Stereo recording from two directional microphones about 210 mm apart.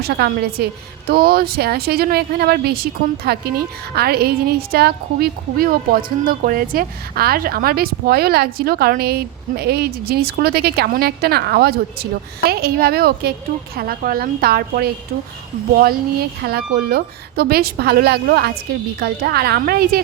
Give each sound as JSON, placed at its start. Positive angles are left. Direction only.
{"t": 0.0, "sound": "a woman's voice", "side_deg": -50}